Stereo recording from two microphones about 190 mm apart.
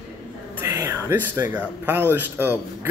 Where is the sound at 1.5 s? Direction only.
10° right (ahead or behind).